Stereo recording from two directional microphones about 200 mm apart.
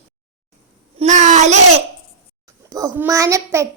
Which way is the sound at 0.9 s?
35° right (ahead or behind).